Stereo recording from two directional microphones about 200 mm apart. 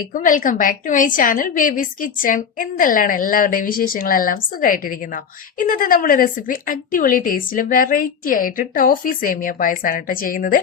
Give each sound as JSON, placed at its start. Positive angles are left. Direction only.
{"t": 0.1, "sound": "a woman's voice", "side_deg": 40}